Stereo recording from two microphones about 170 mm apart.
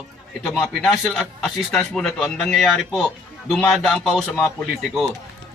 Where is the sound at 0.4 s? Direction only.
Centre (ahead or behind).